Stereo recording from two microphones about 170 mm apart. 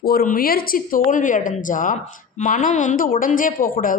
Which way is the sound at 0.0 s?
60° left (ahead or behind).